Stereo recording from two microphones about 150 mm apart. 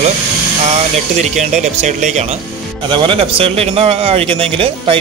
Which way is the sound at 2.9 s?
35° right (ahead or behind).